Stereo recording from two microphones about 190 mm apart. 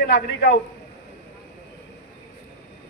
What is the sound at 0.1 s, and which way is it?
Speech, 55° left (ahead or behind).